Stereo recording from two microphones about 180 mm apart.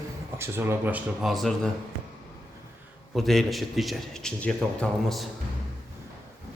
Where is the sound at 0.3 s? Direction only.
15° right (ahead or behind).